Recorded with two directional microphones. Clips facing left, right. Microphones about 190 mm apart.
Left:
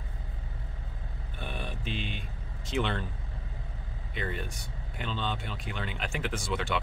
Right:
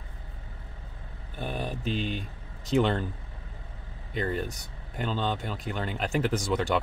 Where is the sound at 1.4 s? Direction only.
40° right (ahead or behind).